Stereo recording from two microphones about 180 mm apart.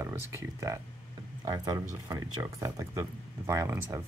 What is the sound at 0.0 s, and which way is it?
Speech, 15° right (ahead or behind).